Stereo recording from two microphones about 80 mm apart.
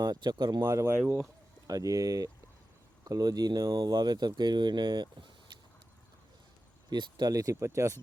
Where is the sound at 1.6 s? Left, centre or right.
Right.